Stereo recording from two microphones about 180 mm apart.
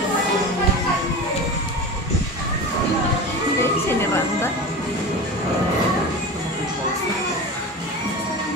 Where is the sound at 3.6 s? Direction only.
15° left (ahead or behind).